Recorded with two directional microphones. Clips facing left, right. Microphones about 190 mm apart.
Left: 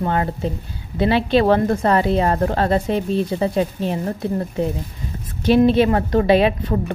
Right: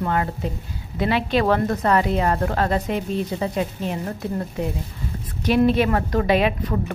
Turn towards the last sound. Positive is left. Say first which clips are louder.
# left 4 dB
turn(degrees=30)  # may be behind; listen again after turning